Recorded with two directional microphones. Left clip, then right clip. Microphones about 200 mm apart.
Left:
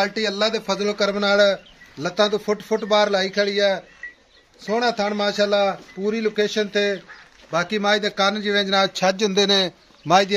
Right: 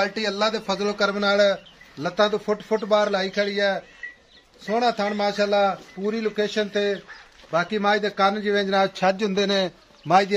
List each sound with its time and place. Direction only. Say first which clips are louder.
0.0 s a man's voice: left 2 dB; 50° left (ahead or behind)